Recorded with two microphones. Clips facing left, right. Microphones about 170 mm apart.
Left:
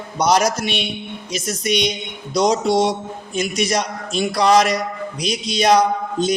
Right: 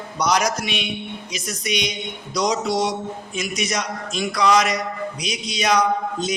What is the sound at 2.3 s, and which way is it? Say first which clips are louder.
A man's voice: left 5 dB; 30° left (ahead or behind).